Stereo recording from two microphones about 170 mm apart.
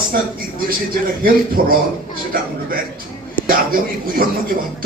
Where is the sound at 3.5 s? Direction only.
60° right (ahead or behind).